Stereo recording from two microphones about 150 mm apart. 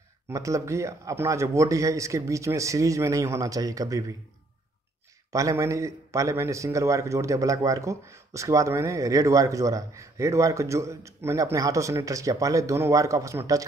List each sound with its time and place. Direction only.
0.3 s a man's voice: 20° right (ahead or behind)
5.3 s a man's voice: 20° right (ahead or behind)